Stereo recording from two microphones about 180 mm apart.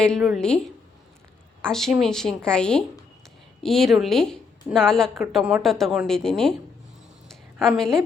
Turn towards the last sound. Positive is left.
turn(degrees=0)  # may be behind; listen again after turning